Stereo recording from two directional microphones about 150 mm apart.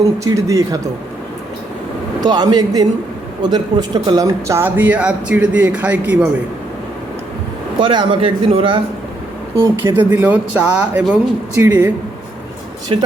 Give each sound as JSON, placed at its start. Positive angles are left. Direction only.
{"t": 0.0, "sound": "speech", "side_deg": -20}
{"t": 2.2, "sound": "speech", "side_deg": -25}
{"t": 7.8, "sound": "a man's voice", "side_deg": -35}
{"t": 9.8, "sound": "speech", "side_deg": -15}
{"t": 12.9, "sound": "a man's voice", "side_deg": -35}